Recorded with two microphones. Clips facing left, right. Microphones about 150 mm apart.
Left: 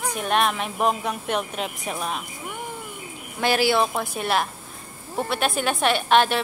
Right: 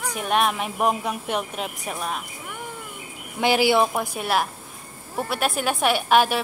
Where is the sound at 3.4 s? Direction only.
15° right (ahead or behind).